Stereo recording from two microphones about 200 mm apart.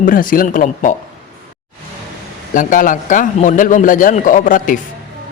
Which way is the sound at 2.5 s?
40° left (ahead or behind).